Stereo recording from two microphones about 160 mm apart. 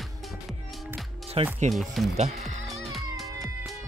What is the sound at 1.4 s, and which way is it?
Speech, 35° right (ahead or behind).